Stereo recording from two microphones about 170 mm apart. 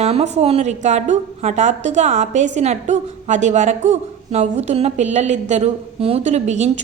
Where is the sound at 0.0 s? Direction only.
40° right (ahead or behind).